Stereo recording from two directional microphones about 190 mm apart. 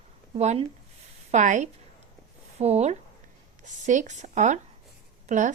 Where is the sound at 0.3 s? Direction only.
35° right (ahead or behind).